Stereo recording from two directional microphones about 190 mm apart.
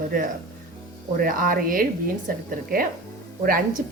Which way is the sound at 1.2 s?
50° right (ahead or behind).